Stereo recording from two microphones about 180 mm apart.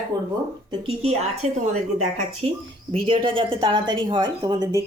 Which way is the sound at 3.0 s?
30° right (ahead or behind).